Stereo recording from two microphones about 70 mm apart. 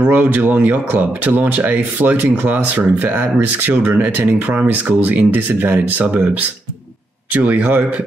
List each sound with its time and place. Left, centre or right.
0.0 s speech: right
7.3 s speech: right